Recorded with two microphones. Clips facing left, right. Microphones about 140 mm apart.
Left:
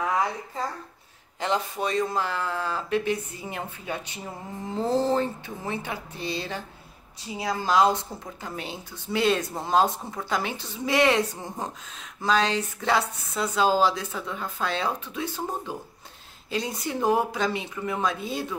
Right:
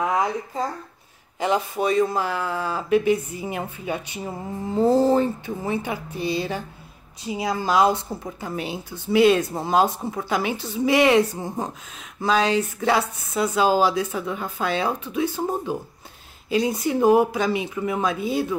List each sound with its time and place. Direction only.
0.0 s speech: 20° right (ahead or behind)